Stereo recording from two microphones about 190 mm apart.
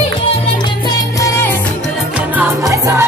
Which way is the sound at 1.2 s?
15° left (ahead or behind).